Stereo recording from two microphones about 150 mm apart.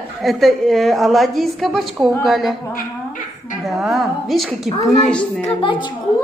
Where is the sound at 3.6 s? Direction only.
Centre (ahead or behind).